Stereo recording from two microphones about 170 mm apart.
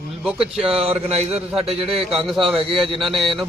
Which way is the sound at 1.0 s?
35° right (ahead or behind).